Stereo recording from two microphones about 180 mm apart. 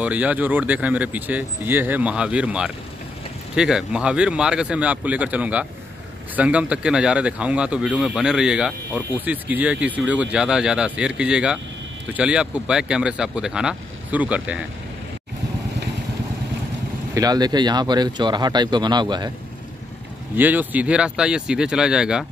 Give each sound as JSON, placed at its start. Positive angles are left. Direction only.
{"t": 0.0, "sound": "speech", "side_deg": -10}
{"t": 17.1, "sound": "speech", "side_deg": -20}
{"t": 20.3, "sound": "speech", "side_deg": -10}